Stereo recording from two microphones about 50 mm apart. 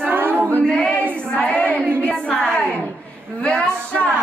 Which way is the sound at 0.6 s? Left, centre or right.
Centre.